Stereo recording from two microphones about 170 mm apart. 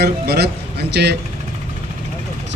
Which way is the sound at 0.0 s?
70° right (ahead or behind).